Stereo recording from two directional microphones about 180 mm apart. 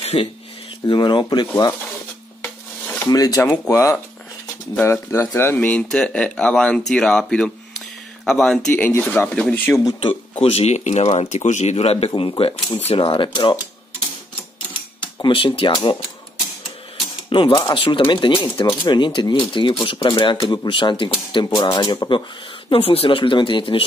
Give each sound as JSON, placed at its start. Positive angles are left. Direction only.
{"t": 0.0, "sound": "a sound", "side_deg": 35}
{"t": 0.8, "sound": "speech", "side_deg": 25}
{"t": 2.4, "sound": "dishes", "side_deg": 10}
{"t": 4.7, "sound": "speech", "side_deg": 10}
{"t": 10.4, "sound": "speech", "side_deg": 35}
{"t": 15.2, "sound": "speech", "side_deg": 30}
{"t": 17.3, "sound": "speech", "side_deg": 30}